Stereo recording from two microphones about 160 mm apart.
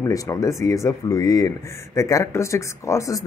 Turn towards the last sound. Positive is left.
turn(degrees=20)  # may be behind; listen again after turning